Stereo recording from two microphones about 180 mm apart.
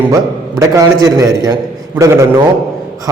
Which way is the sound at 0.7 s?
20° right (ahead or behind).